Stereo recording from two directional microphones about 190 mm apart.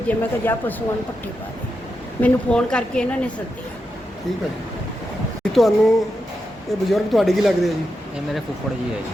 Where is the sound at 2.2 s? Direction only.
5° left (ahead or behind).